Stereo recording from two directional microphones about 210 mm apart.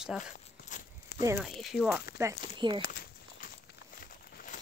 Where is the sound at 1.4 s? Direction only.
Centre (ahead or behind).